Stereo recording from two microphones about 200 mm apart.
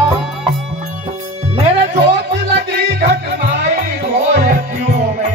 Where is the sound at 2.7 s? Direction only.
55° right (ahead or behind).